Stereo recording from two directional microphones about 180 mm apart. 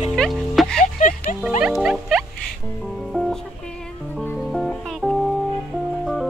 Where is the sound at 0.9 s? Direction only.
45° left (ahead or behind).